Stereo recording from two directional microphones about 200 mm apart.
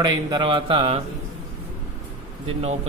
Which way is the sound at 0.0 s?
20° right (ahead or behind).